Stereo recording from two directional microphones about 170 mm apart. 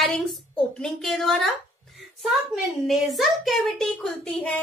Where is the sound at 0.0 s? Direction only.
Centre (ahead or behind).